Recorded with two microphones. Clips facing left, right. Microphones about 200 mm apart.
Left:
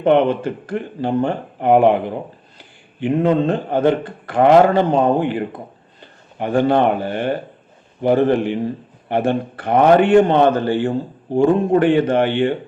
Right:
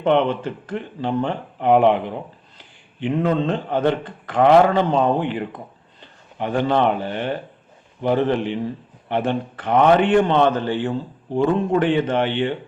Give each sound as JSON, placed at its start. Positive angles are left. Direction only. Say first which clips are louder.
{"t": 0.0, "sound": "a man's voice", "louder": "left 4 dB", "side_deg": 50}